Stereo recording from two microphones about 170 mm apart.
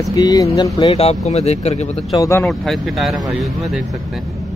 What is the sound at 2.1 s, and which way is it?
Speech, 20° left (ahead or behind).